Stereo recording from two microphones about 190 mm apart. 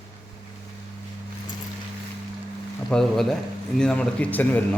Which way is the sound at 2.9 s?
Centre (ahead or behind).